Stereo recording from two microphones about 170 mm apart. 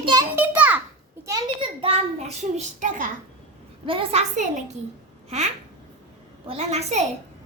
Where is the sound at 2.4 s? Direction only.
45° right (ahead or behind).